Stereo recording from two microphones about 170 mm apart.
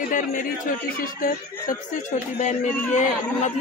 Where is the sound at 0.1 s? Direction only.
50° left (ahead or behind).